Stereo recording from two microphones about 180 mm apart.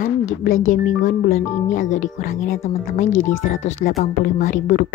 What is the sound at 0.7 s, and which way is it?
Speech, 45° left (ahead or behind).